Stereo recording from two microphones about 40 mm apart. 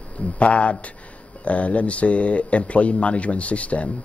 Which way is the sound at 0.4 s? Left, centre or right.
Left.